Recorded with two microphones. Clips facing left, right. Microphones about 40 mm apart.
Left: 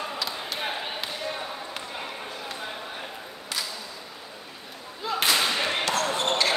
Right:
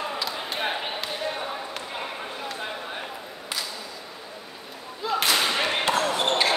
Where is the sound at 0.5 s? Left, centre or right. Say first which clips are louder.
Right 5 dB; right.